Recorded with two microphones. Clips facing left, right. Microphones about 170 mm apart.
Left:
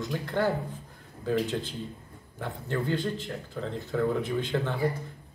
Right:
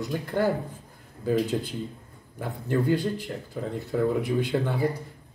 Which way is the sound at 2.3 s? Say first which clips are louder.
Right 5 dB; 10° right (ahead or behind).